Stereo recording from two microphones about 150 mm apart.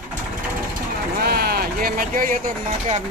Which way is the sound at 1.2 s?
90° right.